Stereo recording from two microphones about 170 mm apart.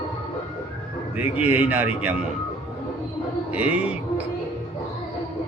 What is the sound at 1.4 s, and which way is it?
Speech, 10° right (ahead or behind).